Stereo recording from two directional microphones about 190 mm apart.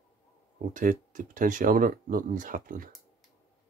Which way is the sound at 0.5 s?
45° right (ahead or behind).